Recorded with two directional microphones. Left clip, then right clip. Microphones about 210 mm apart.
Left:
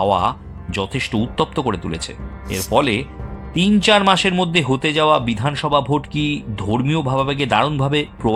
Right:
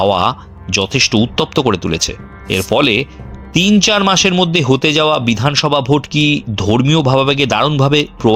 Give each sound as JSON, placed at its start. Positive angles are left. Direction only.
{"t": 0.0, "sound": "speech", "side_deg": -25}